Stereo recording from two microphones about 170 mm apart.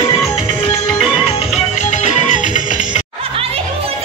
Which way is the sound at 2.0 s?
45° left (ahead or behind).